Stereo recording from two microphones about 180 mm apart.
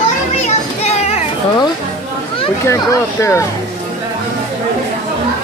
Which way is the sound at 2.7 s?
15° left (ahead or behind).